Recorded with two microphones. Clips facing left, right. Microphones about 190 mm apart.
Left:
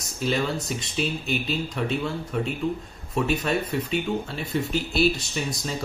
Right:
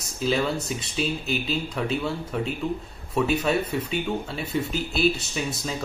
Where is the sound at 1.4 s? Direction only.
Centre (ahead or behind).